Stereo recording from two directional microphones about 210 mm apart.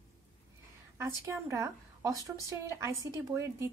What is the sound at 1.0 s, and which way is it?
A woman's voice, 15° right (ahead or behind).